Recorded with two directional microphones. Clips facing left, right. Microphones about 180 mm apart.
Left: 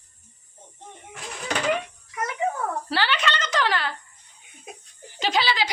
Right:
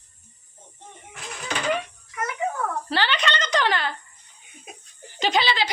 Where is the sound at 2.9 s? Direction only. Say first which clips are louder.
Right 1 dB; 5° left (ahead or behind).